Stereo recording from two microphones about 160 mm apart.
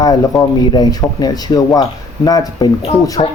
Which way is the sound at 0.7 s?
25° left (ahead or behind).